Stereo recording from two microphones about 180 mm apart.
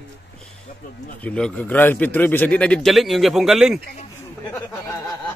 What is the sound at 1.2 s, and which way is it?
A man's voice, 5° left (ahead or behind).